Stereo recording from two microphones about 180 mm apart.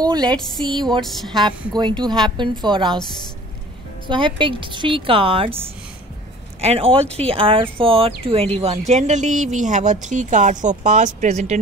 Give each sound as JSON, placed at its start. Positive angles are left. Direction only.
{"t": 0.0, "sound": "a woman's voice", "side_deg": -20}
{"t": 1.0, "sound": "speech", "side_deg": 0}
{"t": 1.7, "sound": "a woman's voice", "side_deg": -25}
{"t": 4.1, "sound": "a woman's voice", "side_deg": -30}
{"t": 6.6, "sound": "a woman's voice", "side_deg": -35}